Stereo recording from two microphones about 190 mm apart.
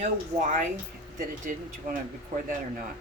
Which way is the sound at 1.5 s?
45° right (ahead or behind).